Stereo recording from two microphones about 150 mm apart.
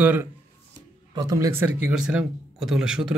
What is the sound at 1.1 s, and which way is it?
Speech, 25° right (ahead or behind).